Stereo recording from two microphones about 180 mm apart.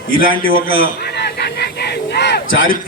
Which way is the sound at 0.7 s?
65° left (ahead or behind).